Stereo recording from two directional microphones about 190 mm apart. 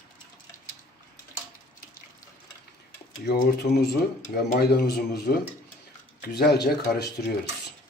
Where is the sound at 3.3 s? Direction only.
60° left (ahead or behind).